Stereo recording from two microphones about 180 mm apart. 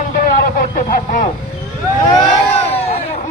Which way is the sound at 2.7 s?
35° left (ahead or behind).